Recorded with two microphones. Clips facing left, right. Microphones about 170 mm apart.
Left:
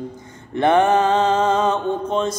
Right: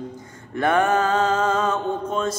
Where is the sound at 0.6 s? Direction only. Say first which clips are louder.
Left 4 dB; 20° left (ahead or behind).